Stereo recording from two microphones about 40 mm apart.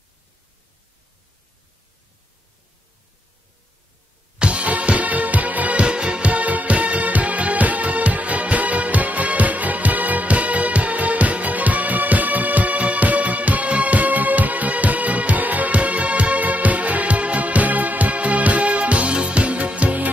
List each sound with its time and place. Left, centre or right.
4.4 s music: right
5.8 s music: right
6.2 s music: right